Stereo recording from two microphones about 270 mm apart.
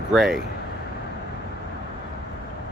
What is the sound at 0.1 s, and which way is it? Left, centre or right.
Speech, centre.